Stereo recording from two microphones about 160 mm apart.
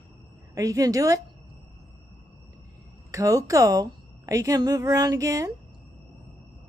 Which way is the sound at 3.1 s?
20° right (ahead or behind).